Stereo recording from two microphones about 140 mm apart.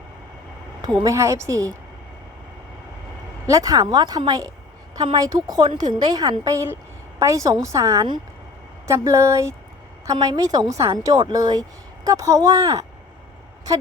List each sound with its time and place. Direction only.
0.8 s a woman's voice: 25° right (ahead or behind)
3.4 s a woman's voice: 25° right (ahead or behind)